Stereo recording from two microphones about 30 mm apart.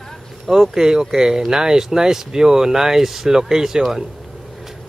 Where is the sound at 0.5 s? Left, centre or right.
Centre.